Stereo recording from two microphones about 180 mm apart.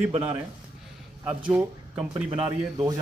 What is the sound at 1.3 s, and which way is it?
Speech, 10° right (ahead or behind).